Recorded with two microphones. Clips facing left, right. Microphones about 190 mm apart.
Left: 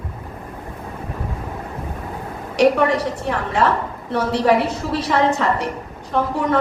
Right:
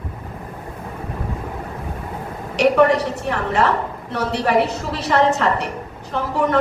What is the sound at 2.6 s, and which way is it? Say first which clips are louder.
A woman's voice: right 1 dB; 65° right (ahead or behind).